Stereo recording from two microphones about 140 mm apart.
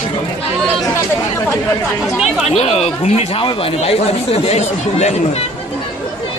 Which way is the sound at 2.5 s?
50° left (ahead or behind).